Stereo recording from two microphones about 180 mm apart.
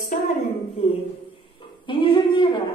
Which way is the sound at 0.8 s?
35° left (ahead or behind).